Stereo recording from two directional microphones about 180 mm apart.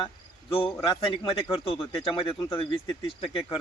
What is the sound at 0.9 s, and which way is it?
Speech, 30° left (ahead or behind).